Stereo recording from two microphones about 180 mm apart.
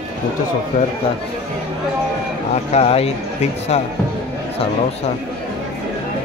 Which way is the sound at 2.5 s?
35° left (ahead or behind).